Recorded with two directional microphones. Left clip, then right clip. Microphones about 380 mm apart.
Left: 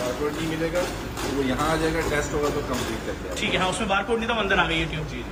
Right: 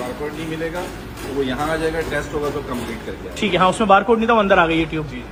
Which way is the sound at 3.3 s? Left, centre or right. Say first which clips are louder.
Right 8 dB; centre.